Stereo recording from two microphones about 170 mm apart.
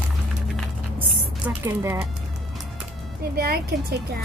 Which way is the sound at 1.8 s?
15° right (ahead or behind).